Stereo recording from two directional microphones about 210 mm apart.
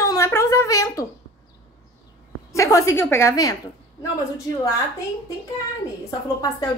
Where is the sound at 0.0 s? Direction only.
15° left (ahead or behind).